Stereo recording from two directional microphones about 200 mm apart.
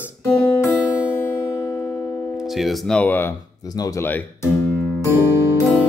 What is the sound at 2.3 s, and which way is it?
Speech, centre (ahead or behind).